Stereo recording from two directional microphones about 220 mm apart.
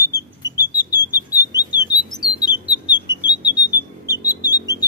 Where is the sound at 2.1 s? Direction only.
20° left (ahead or behind).